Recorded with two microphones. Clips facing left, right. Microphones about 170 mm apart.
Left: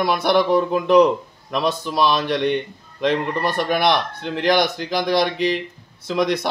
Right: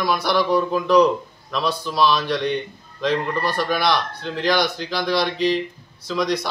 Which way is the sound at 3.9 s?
55° left (ahead or behind).